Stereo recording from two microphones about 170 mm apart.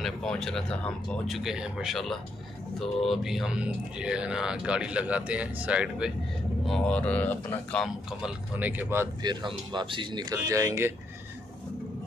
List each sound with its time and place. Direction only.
0.0 s speech: centre (ahead or behind)
6.7 s speech: 5° left (ahead or behind); by 9.1 s 10° right (ahead or behind)
9.2 s speech: 25° right (ahead or behind)